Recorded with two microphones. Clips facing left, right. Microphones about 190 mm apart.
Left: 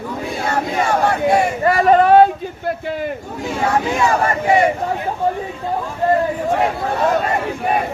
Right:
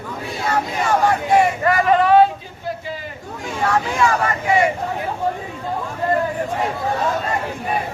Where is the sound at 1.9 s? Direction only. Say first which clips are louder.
Left 3 dB; 45° left (ahead or behind).